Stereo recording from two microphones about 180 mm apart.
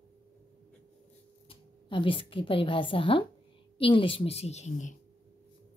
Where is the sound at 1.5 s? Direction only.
30° left (ahead or behind).